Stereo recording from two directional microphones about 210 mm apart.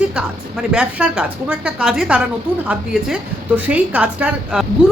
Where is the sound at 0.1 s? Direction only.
5° right (ahead or behind).